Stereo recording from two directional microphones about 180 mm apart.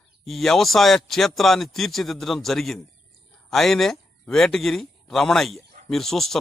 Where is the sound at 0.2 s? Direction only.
Centre (ahead or behind).